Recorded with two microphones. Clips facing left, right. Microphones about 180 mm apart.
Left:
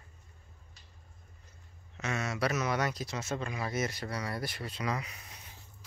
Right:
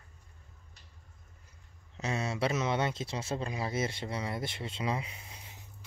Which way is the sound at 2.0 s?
30° right (ahead or behind).